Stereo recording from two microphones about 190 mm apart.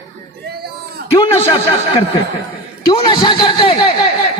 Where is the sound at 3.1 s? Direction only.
25° left (ahead or behind).